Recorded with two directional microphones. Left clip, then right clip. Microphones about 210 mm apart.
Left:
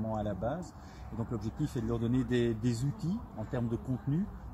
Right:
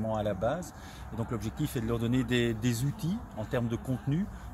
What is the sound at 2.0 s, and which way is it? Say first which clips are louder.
Speech: right 1 dB; 10° right (ahead or behind).